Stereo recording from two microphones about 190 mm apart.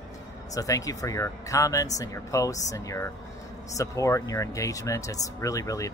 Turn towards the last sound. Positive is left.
turn(degrees=15)  # may be behind; listen again after turning